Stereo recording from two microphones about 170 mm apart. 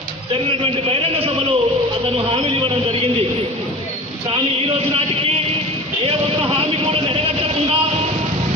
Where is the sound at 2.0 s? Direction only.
35° right (ahead or behind).